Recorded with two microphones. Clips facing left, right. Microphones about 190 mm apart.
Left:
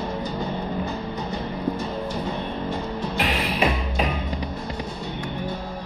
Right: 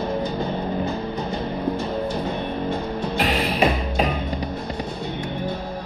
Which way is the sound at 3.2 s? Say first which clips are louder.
Right 3 dB; 35° right (ahead or behind).